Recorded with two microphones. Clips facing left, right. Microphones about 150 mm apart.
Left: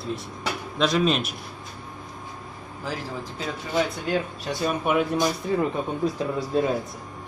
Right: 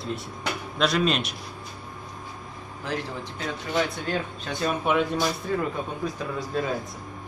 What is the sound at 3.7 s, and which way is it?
Speech, 10° left (ahead or behind).